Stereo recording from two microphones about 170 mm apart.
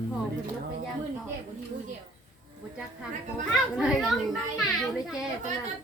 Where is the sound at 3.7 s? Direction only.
5° right (ahead or behind).